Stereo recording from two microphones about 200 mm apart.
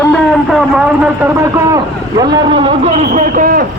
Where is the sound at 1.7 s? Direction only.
20° right (ahead or behind).